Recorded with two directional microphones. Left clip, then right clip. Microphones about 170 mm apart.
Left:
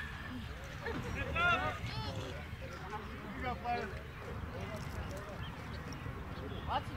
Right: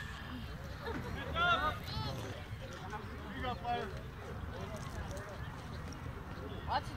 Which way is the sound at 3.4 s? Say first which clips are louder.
Even; 30° left (ahead or behind).